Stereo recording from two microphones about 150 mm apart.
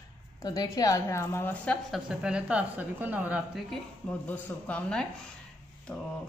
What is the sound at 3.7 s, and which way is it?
A woman's voice, 10° left (ahead or behind).